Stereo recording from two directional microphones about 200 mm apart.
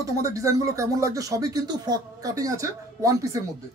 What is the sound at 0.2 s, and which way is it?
Speech, 15° right (ahead or behind).